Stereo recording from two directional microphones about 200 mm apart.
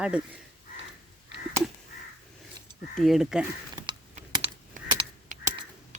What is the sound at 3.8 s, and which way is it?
Typing, 30° right (ahead or behind).